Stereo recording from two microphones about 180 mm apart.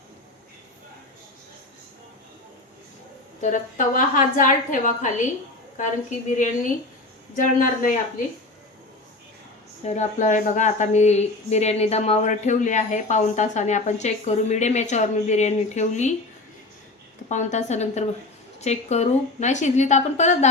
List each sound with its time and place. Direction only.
3.4 s a woman's voice: 45° left (ahead or behind)
9.8 s a woman's voice: 40° left (ahead or behind)
17.2 s a woman's voice: 40° left (ahead or behind)